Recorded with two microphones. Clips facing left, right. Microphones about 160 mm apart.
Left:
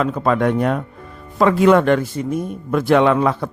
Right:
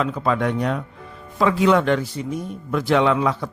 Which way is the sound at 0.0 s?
50° left (ahead or behind).